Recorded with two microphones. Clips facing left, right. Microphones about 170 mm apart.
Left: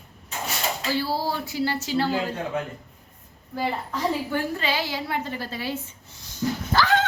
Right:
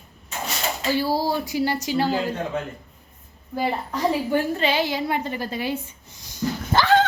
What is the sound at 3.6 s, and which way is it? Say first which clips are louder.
A woman's voice: right 3 dB; 15° right (ahead or behind).